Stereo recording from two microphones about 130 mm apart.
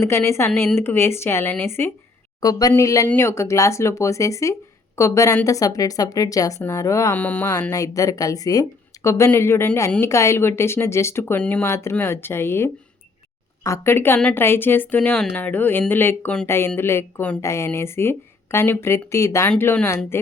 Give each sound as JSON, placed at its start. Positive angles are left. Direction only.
{"t": 0.0, "sound": "speech", "side_deg": 20}
{"t": 2.4, "sound": "speech", "side_deg": 30}
{"t": 7.2, "sound": "a woman's voice", "side_deg": 10}
{"t": 7.7, "sound": "a woman's voice", "side_deg": 25}